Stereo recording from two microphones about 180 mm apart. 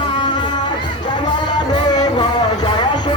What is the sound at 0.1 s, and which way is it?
Music, 25° left (ahead or behind).